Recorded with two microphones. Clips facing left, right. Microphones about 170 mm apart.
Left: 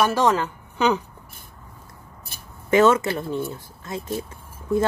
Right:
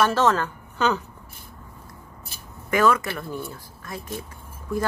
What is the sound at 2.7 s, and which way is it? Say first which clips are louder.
Speech: left 4 dB; 25° left (ahead or behind).